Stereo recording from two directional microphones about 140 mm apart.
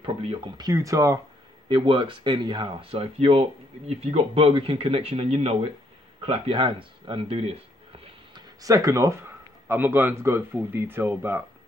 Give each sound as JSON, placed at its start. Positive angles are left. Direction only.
{"t": 0.6, "sound": "speech", "side_deg": -25}
{"t": 1.7, "sound": "speech", "side_deg": -35}
{"t": 8.5, "sound": "speech", "side_deg": -25}